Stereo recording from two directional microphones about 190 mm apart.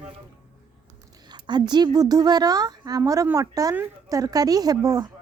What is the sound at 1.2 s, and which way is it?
Speech, 25° right (ahead or behind).